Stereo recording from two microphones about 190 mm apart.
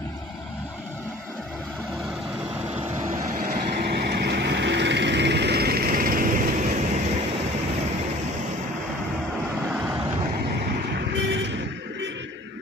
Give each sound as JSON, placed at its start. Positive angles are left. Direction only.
{"t": 3.3, "sound": "vehicle", "side_deg": -50}
{"t": 10.9, "sound": "vehicle", "side_deg": -65}